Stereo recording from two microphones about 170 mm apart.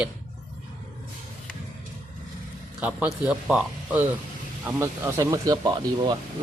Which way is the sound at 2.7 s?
5° right (ahead or behind).